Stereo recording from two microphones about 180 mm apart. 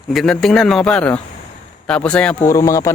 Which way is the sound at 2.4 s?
15° left (ahead or behind).